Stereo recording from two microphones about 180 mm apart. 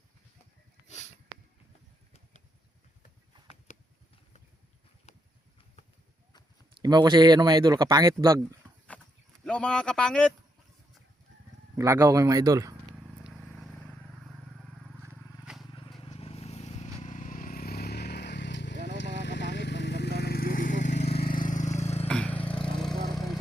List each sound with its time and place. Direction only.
3.7 s a sound: 40° left (ahead or behind)
6.8 s speech: 20° right (ahead or behind)
8.9 s a sound: 5° left (ahead or behind)
9.4 s speech: 5° left (ahead or behind)
11.8 s speech: 15° right (ahead or behind)
13.2 s vehicle: centre (ahead or behind)
15.7 s vehicle: 25° left (ahead or behind); by 20.9 s 50° left (ahead or behind)
20.9 s vehicle: 65° left (ahead or behind); by 22.0 s 35° left (ahead or behind)
22.0 s vehicle: 5° left (ahead or behind)
22.4 s vehicle: 30° left (ahead or behind)